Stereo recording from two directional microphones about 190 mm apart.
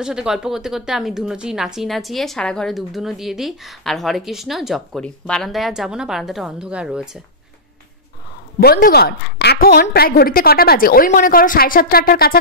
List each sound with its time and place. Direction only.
0.0 s a woman's voice: 5° right (ahead or behind)
8.5 s a woman's voice: 50° left (ahead or behind)